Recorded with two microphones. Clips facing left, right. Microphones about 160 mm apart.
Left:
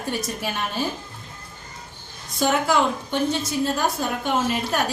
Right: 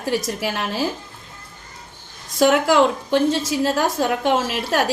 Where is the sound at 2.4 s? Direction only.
90° right.